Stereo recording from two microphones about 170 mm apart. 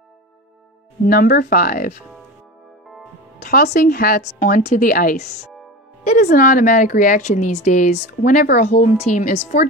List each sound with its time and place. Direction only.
1.0 s a woman's voice: 60° left (ahead or behind)
3.3 s a woman's voice: 65° left (ahead or behind); by 9.7 s 45° left (ahead or behind)